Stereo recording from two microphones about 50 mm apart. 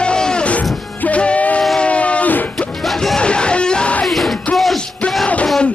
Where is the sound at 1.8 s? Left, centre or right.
Left.